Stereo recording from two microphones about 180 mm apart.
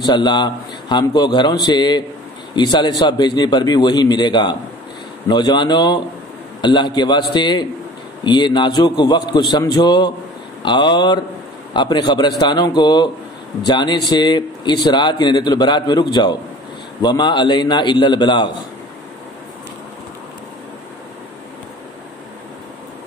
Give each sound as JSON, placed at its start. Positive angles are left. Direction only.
{"t": 0.0, "sound": "a man's voice", "side_deg": 25}